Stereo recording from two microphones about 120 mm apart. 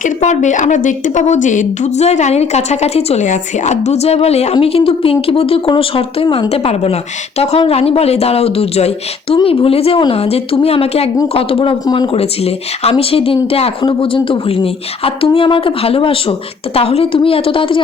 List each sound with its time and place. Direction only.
0.0 s a woman's voice: 85° left; by 12.2 s 45° left (ahead or behind)
12.2 s speech: 55° left (ahead or behind)